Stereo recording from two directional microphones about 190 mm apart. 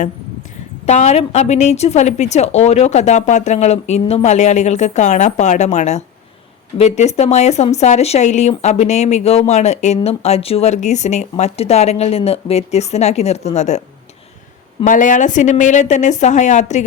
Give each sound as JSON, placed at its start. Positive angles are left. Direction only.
{"t": 0.9, "sound": "speech", "side_deg": 35}
{"t": 14.8, "sound": "speech", "side_deg": 45}